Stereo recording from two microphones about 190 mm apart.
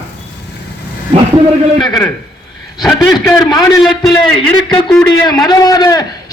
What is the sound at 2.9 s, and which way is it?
Speech, 20° left (ahead or behind).